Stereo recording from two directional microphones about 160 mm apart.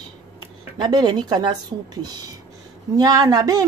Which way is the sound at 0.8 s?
25° right (ahead or behind).